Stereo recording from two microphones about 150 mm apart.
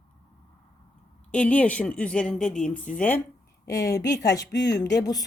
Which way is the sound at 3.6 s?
20° left (ahead or behind).